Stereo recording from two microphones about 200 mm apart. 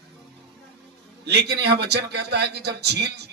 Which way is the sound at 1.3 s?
55° right (ahead or behind).